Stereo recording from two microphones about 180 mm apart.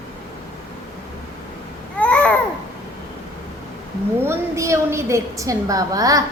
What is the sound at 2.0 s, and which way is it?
Babbling, 5° left (ahead or behind).